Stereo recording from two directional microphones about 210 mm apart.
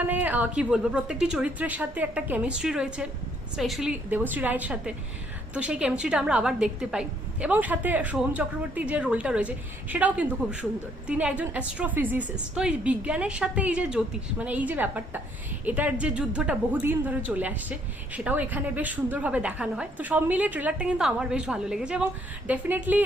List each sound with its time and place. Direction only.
0.0 s a woman's voice: 10° right (ahead or behind)